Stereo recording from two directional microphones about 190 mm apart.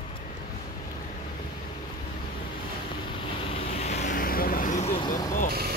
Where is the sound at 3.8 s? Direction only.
35° left (ahead or behind).